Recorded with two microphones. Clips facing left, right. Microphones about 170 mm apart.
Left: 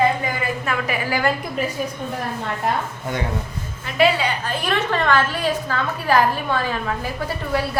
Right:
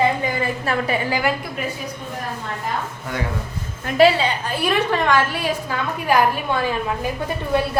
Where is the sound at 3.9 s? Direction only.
35° right (ahead or behind).